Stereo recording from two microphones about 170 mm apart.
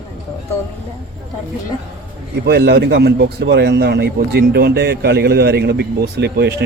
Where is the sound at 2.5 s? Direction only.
70° right (ahead or behind).